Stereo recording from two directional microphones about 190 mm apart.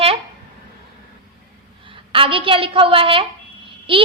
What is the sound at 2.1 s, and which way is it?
A woman's voice, 25° right (ahead or behind).